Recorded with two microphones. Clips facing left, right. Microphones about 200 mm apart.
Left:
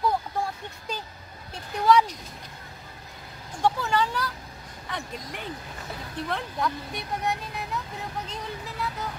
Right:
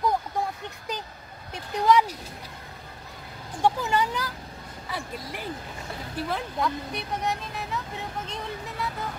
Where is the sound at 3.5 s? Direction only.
15° right (ahead or behind).